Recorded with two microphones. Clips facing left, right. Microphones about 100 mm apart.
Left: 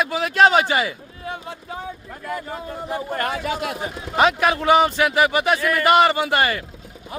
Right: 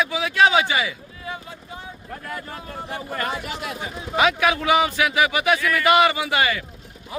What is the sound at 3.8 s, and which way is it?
Speech, 40° left (ahead or behind).